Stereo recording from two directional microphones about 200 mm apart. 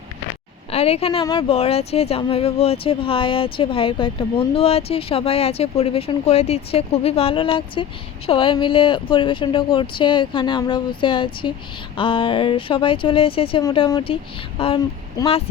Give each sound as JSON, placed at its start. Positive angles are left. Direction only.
{"t": 0.7, "sound": "a woman's voice", "side_deg": 30}